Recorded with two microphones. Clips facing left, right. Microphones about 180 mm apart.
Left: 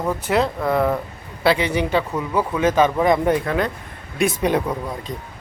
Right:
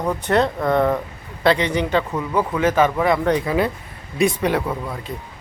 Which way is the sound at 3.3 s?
5° right (ahead or behind).